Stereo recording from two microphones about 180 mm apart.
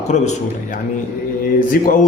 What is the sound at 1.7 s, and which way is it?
Speech, 50° left (ahead or behind).